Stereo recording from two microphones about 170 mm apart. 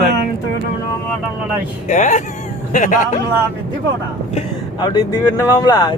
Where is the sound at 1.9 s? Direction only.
45° left (ahead or behind).